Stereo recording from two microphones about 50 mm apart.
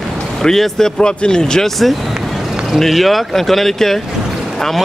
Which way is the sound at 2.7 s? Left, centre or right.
Centre.